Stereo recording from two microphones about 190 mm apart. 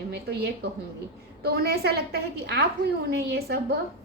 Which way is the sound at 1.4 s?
55° right (ahead or behind).